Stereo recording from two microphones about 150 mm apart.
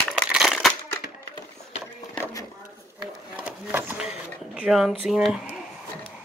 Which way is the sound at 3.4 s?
10° right (ahead or behind).